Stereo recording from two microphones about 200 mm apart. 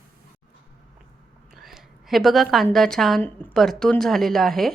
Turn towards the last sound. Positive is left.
turn(degrees=0)  # may be behind; listen again after turning